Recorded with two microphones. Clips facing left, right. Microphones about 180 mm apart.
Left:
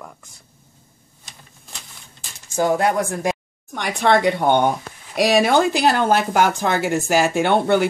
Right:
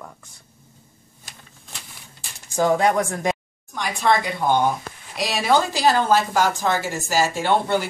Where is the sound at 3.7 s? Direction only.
65° left (ahead or behind).